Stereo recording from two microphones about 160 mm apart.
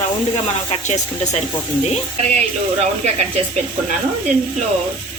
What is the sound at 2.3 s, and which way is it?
Speech, 45° right (ahead or behind).